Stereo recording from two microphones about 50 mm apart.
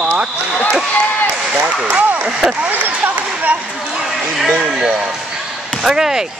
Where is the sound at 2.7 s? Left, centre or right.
Right.